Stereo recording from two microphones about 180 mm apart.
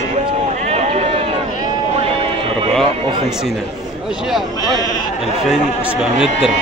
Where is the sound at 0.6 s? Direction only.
35° right (ahead or behind).